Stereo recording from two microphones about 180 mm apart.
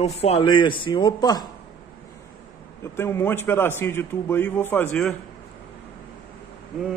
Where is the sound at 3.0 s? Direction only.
15° left (ahead or behind).